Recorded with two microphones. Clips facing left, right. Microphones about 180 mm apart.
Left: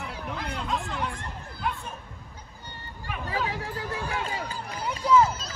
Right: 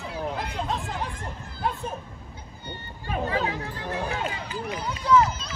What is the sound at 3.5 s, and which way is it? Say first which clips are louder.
Chatter: even; 35° left (ahead or behind).